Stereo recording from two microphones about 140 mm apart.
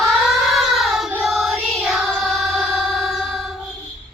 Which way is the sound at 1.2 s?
Centre (ahead or behind).